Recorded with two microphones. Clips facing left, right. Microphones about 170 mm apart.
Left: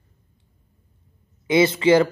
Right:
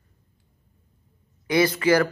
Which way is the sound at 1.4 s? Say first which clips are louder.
Left 3 dB; 25° left (ahead or behind).